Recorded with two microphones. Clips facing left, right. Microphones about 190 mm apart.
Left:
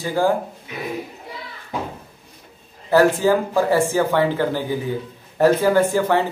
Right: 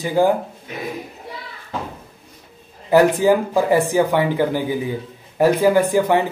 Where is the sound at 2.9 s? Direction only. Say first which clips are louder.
Right 2 dB; 15° right (ahead or behind).